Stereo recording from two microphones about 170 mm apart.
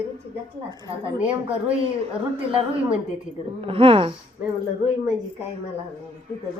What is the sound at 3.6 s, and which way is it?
Speech, 30° right (ahead or behind).